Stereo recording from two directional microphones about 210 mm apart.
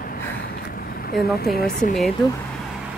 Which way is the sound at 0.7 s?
45° left (ahead or behind).